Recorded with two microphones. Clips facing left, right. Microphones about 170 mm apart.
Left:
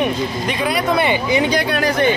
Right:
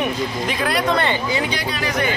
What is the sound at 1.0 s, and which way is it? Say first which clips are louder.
Speech: left 4 dB; 15° left (ahead or behind).